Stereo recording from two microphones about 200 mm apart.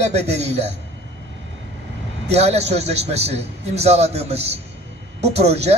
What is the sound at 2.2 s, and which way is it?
A man's voice, 30° right (ahead or behind).